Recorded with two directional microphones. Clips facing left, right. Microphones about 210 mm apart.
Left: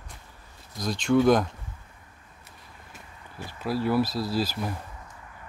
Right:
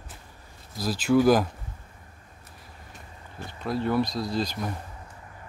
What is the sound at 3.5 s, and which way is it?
Speech, 5° left (ahead or behind).